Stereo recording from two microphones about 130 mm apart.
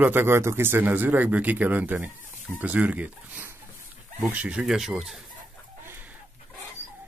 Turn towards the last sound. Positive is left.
turn(degrees=-15)  # may be behind; listen again after turning